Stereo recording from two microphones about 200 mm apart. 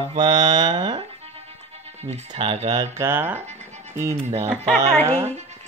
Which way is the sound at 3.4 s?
35° right (ahead or behind).